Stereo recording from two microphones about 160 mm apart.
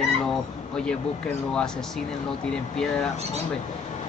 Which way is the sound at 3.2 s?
40° right (ahead or behind).